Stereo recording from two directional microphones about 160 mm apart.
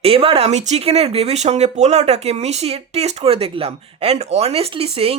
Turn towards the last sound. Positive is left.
turn(degrees=-40)  # may be behind; listen again after turning